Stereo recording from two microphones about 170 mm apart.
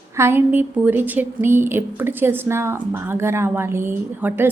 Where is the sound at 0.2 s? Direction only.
15° right (ahead or behind).